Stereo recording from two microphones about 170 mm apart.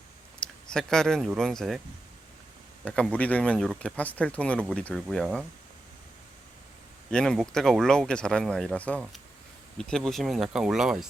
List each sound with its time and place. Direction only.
0.4 s speech: 5° left (ahead or behind)
2.8 s speech: 5° left (ahead or behind)
7.1 s speech: 5° left (ahead or behind)